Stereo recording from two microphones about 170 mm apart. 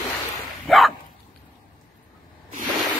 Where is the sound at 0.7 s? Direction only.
Centre (ahead or behind).